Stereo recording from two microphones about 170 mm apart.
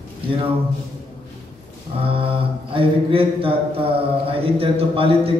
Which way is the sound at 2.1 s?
30° right (ahead or behind).